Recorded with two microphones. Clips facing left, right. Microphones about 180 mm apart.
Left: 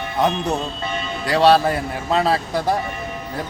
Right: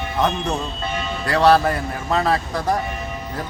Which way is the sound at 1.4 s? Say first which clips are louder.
Left 1 dB; 30° left (ahead or behind).